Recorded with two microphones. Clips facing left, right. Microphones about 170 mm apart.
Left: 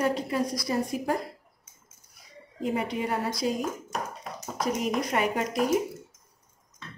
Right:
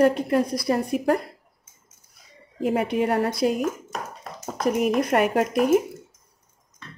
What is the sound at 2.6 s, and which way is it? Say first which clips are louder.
Speech: right 6 dB; 65° right (ahead or behind).